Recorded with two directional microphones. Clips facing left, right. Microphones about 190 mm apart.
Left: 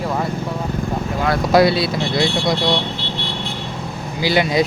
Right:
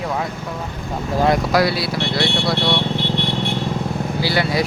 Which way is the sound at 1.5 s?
25° left (ahead or behind).